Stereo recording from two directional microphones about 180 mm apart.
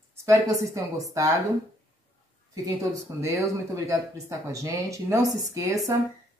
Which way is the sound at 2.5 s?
20° right (ahead or behind).